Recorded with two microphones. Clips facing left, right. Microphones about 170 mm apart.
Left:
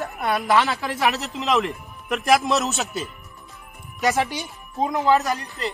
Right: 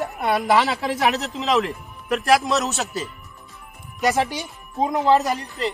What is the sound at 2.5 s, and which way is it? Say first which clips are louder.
Speech: even; centre (ahead or behind).